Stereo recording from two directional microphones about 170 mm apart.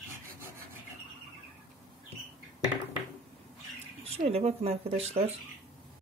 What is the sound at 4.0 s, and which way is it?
Speech, 35° right (ahead or behind).